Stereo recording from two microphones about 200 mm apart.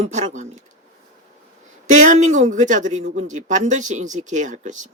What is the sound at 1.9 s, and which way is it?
Speech, 40° right (ahead or behind).